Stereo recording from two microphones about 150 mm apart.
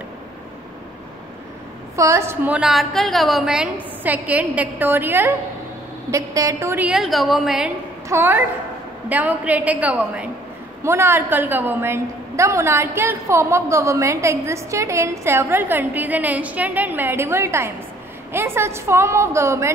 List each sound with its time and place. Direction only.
2.0 s a woman's voice: 20° right (ahead or behind)
6.9 s a woman's voice: centre (ahead or behind)
8.1 s a woman's voice: 15° right (ahead or behind)